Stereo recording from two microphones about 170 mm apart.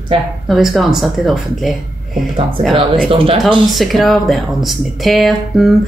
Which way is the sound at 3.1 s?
30° right (ahead or behind).